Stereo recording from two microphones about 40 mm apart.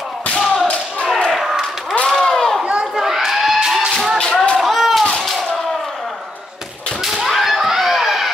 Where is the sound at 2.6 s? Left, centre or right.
Right.